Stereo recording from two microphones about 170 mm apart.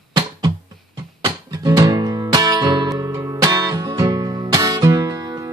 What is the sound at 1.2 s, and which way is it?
Music, 20° right (ahead or behind).